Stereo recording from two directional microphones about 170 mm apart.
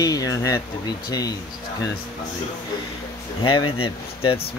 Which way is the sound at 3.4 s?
30° left (ahead or behind).